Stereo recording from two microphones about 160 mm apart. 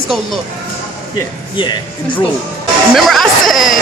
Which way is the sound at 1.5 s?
30° left (ahead or behind).